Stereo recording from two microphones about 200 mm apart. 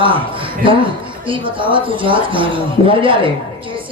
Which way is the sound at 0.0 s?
25° right (ahead or behind).